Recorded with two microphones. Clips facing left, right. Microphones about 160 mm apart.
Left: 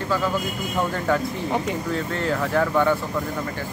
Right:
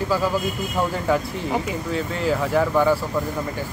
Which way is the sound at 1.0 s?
5° right (ahead or behind).